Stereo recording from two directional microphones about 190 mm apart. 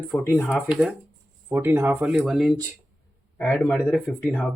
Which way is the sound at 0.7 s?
5° right (ahead or behind).